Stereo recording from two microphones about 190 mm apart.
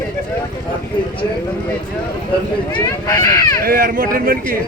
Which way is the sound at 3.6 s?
50° right (ahead or behind).